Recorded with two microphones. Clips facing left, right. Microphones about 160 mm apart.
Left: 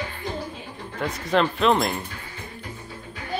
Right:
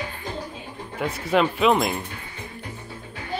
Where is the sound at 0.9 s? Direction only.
10° right (ahead or behind).